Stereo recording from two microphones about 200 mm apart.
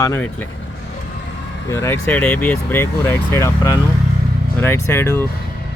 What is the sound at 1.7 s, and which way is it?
Speech, 10° left (ahead or behind).